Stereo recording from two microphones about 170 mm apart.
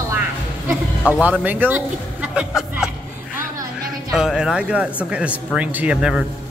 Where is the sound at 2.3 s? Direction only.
5° right (ahead or behind).